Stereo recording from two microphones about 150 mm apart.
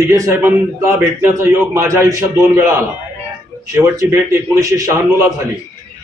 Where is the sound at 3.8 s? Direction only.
20° right (ahead or behind).